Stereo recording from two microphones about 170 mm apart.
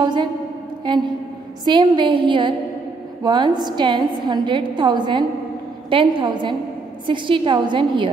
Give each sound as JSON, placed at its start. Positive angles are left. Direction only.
{"t": 0.0, "sound": "a woman's voice", "side_deg": -25}